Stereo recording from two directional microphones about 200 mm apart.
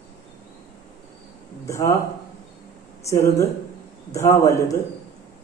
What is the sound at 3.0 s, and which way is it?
A man's voice, 15° left (ahead or behind).